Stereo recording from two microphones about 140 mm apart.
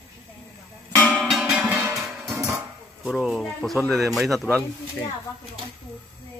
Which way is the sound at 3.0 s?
5° right (ahead or behind).